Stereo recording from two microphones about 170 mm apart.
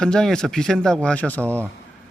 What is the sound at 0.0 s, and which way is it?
Speech, 5° left (ahead or behind).